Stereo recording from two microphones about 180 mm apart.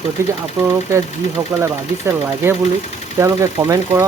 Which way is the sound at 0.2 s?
15° right (ahead or behind).